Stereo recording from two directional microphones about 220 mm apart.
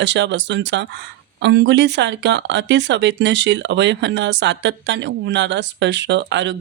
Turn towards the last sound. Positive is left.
turn(degrees=-55)  # may be behind; listen again after turning